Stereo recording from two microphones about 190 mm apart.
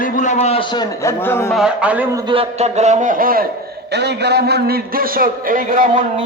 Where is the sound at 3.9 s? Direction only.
60° right (ahead or behind); by 6.0 s 45° right (ahead or behind).